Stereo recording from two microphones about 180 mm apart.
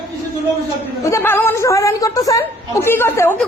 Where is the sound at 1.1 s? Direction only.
10° left (ahead or behind).